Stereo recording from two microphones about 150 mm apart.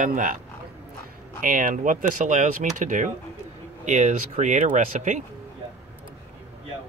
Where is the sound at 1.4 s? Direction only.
65° right (ahead or behind).